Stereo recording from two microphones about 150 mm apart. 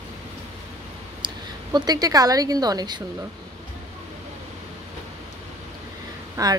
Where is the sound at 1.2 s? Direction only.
25° right (ahead or behind).